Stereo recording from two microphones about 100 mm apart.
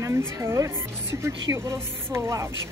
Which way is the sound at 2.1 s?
30° right (ahead or behind).